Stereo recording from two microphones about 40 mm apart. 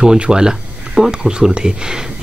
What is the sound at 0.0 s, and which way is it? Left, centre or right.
Speech, centre.